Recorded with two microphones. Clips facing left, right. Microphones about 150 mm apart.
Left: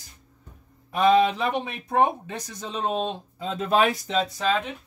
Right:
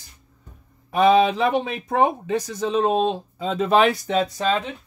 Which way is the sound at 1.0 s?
90° right.